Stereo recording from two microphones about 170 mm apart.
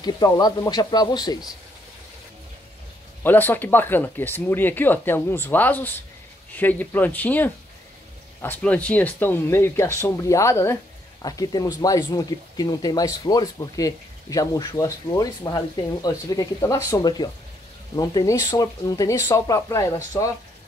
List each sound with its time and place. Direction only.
0.0 s speech: 25° left (ahead or behind)
3.3 s speech: 10° left (ahead or behind)